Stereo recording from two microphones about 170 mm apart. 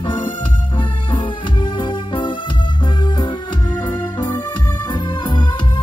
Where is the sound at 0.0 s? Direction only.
30° left (ahead or behind).